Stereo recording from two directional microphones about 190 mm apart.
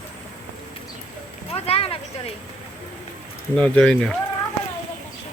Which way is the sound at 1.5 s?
30° left (ahead or behind).